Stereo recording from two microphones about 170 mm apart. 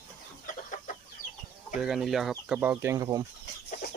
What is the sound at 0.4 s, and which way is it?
Chicken, 50° left (ahead or behind).